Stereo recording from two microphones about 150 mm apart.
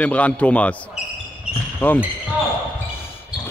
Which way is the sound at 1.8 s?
15° left (ahead or behind).